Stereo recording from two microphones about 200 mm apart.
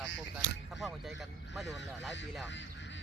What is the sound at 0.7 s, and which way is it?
Speech, centre (ahead or behind).